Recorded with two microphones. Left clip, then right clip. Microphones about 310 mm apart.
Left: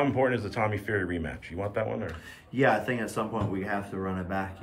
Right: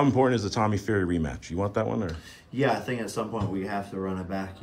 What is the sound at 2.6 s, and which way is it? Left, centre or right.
Speech, centre.